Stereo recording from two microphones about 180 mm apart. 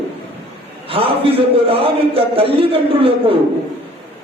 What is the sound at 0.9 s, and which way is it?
A man's voice, 30° right (ahead or behind).